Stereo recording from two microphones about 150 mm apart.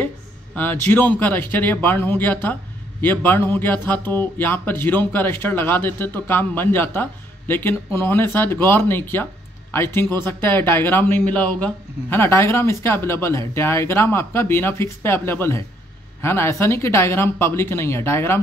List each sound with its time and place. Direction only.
0.6 s speech: 10° left (ahead or behind)